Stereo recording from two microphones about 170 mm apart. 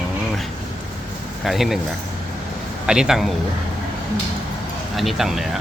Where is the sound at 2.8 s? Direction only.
5° right (ahead or behind).